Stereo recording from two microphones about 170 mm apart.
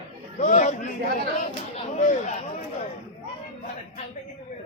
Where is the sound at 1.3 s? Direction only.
45° left (ahead or behind).